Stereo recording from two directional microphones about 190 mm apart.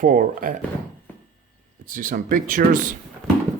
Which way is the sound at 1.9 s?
45° right (ahead or behind).